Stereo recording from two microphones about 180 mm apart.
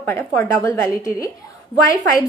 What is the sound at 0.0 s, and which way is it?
A woman's voice, 10° left (ahead or behind).